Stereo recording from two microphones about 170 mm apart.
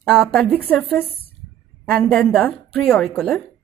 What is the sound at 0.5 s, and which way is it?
A woman's voice, 10° left (ahead or behind).